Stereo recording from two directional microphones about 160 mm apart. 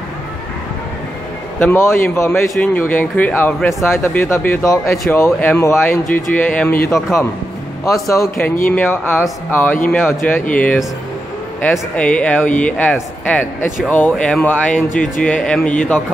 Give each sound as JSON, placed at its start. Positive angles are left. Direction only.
{"t": 1.6, "sound": "speech", "side_deg": 15}